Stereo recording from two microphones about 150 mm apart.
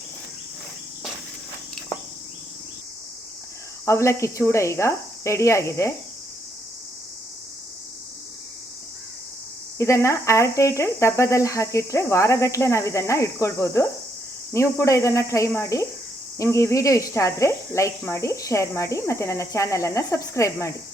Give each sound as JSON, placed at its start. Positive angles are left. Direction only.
{"t": 3.8, "sound": "speech", "side_deg": 20}
{"t": 9.7, "sound": "speech", "side_deg": 20}